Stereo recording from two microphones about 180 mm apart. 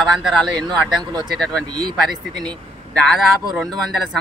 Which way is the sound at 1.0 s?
25° right (ahead or behind).